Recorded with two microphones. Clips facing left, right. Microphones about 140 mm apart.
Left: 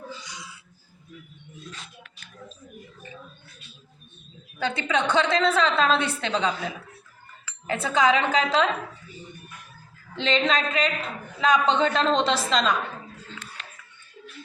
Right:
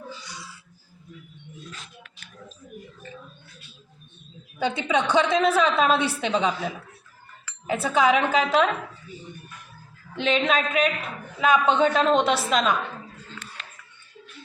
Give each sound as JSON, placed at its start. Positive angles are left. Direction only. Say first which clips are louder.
{"t": 0.3, "sound": "wheeze", "louder": "right 1 dB", "side_deg": 15}
{"t": 4.6, "sound": "a woman's voice", "louder": "right 2 dB", "side_deg": -15}
{"t": 10.2, "sound": "a woman's voice", "louder": "right 1 dB", "side_deg": -5}